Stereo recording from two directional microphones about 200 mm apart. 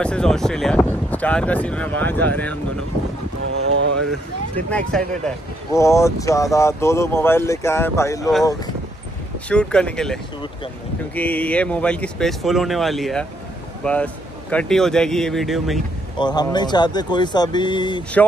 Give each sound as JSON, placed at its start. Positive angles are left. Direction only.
{"t": 0.0, "sound": "speech", "side_deg": 5}
{"t": 3.5, "sound": "speech", "side_deg": -80}
{"t": 4.6, "sound": "speech", "side_deg": 5}
{"t": 9.5, "sound": "speech", "side_deg": 5}
{"t": 16.2, "sound": "speech", "side_deg": 20}